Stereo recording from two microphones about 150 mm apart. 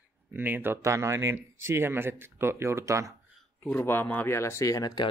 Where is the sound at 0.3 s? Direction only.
15° right (ahead or behind).